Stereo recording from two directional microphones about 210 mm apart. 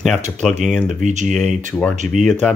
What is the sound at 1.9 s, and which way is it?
Speech, 35° right (ahead or behind).